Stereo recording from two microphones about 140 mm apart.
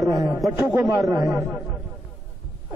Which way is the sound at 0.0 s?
Centre (ahead or behind).